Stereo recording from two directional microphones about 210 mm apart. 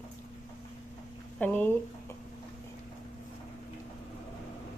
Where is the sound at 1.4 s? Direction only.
10° left (ahead or behind).